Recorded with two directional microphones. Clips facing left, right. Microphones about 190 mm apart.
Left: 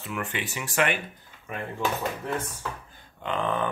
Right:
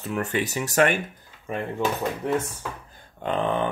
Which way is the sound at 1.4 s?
25° right (ahead or behind).